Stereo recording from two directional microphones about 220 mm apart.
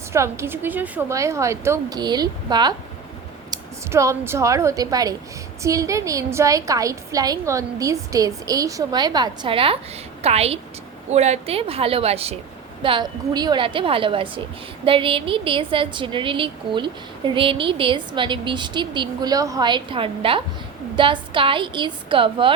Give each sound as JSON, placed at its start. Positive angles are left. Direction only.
{"t": 0.1, "sound": "a woman's voice", "side_deg": -10}